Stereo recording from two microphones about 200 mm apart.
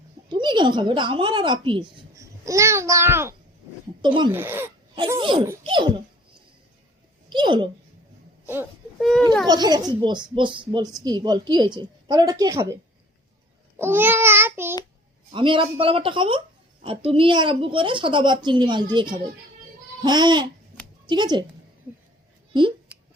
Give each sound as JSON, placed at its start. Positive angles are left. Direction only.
{"t": 0.3, "sound": "speech", "side_deg": -20}
{"t": 4.0, "sound": "speech", "side_deg": -25}
{"t": 4.3, "sound": "child singing", "side_deg": -10}
{"t": 4.9, "sound": "speech", "side_deg": -20}
{"t": 7.3, "sound": "a child's voice", "side_deg": -25}
{"t": 9.0, "sound": "a child's voice", "side_deg": 0}
{"t": 9.5, "sound": "speech", "side_deg": -20}
{"t": 13.7, "sound": "child singing", "side_deg": -10}
{"t": 15.3, "sound": "speech", "side_deg": -25}